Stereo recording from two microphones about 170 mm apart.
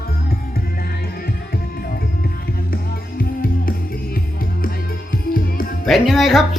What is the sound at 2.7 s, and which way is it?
Music, 55° left (ahead or behind).